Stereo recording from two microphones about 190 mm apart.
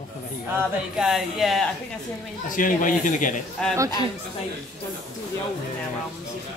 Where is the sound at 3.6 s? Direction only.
5° left (ahead or behind).